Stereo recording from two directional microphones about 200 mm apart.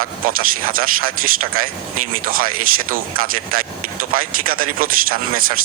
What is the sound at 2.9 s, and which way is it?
Speech, 45° right (ahead or behind).